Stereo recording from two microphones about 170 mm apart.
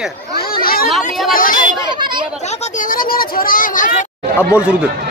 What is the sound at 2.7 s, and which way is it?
Speech, 55° left (ahead or behind).